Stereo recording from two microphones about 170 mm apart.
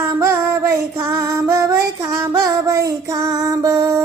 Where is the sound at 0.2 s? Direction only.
15° right (ahead or behind).